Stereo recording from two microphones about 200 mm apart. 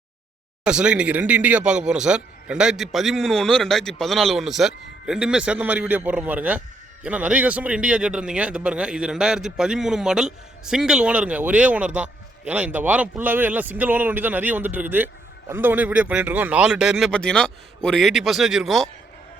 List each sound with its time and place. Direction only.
0.6 s a man's voice: 5° right (ahead or behind)